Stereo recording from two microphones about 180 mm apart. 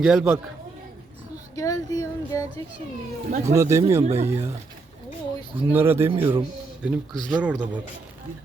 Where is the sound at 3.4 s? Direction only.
15° right (ahead or behind).